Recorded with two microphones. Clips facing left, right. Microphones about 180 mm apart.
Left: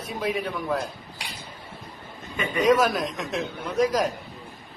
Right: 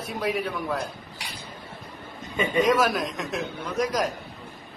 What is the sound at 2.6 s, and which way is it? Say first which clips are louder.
A man's voice: left 2 dB; centre (ahead or behind).